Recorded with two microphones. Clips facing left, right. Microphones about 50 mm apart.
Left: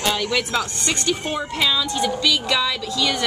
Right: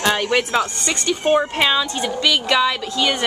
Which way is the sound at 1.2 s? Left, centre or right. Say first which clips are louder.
Right 10 dB; right.